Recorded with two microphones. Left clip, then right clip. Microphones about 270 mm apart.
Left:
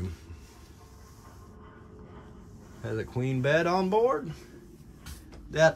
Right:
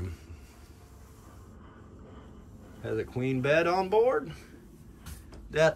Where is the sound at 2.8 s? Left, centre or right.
Centre.